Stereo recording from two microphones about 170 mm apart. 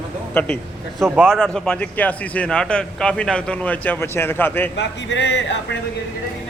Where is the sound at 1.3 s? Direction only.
5° left (ahead or behind).